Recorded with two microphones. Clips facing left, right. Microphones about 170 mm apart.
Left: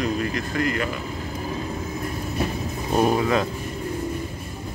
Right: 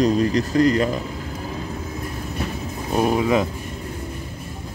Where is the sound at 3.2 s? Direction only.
15° right (ahead or behind).